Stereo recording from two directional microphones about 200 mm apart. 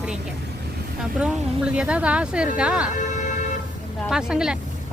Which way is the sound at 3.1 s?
35° left (ahead or behind).